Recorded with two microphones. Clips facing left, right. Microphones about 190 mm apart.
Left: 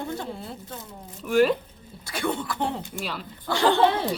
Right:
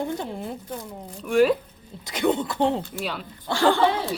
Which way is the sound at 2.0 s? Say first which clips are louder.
Right 5 dB; 20° right (ahead or behind).